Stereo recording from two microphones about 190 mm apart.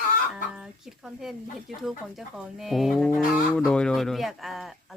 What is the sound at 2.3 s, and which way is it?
Speech, centre (ahead or behind).